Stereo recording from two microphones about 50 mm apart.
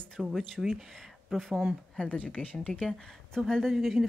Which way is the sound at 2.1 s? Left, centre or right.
Left.